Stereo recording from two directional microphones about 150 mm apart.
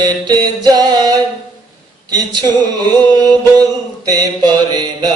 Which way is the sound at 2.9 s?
25° right (ahead or behind).